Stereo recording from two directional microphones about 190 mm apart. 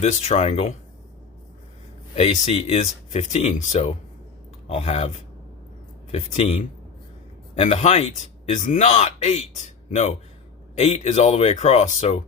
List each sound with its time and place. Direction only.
0.0 s a man's voice: 35° left (ahead or behind)
2.1 s a man's voice: 35° left (ahead or behind)